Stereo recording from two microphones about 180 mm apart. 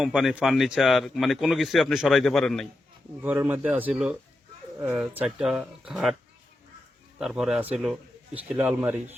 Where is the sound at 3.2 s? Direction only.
10° right (ahead or behind).